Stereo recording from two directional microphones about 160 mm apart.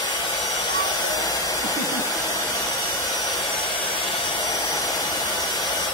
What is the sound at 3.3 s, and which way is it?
Hair dryer, centre (ahead or behind).